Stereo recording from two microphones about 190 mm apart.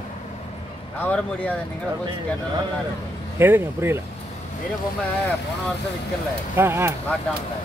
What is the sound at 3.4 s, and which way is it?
Speech, 10° right (ahead or behind).